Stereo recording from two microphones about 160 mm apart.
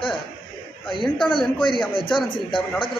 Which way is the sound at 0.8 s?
30° left (ahead or behind).